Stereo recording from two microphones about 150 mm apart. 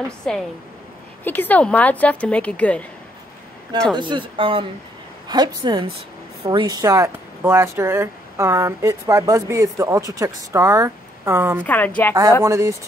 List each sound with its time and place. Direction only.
0.3 s a woman's voice: 5° left (ahead or behind)
3.9 s speech: 30° right (ahead or behind); by 11.6 s 15° right (ahead or behind)
11.6 s a woman's voice: 10° left (ahead or behind)
12.4 s speech: 20° right (ahead or behind)